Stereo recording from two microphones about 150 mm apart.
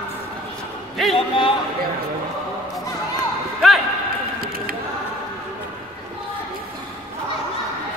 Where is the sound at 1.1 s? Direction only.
35° left (ahead or behind).